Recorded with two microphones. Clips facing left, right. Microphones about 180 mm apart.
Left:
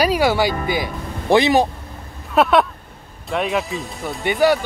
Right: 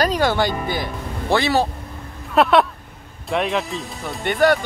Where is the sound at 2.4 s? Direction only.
Centre (ahead or behind).